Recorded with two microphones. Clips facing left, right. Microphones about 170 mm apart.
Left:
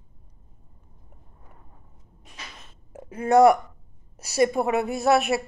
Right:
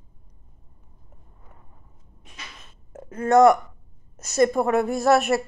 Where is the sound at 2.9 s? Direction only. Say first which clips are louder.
Right 1 dB; 10° left (ahead or behind).